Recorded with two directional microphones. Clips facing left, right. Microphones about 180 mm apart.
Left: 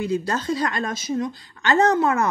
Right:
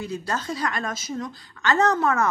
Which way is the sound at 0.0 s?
25° left (ahead or behind).